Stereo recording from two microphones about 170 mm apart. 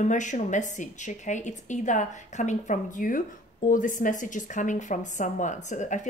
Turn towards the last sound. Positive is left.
turn(degrees=45)  # may be behind; listen again after turning